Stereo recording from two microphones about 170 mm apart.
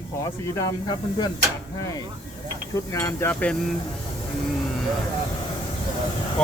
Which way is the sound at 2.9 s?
15° left (ahead or behind).